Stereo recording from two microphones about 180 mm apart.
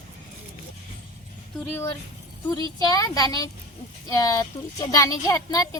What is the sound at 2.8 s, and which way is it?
A child's voice, 20° left (ahead or behind).